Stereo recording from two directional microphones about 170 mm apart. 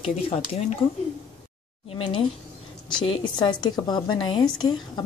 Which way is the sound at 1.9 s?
30° left (ahead or behind).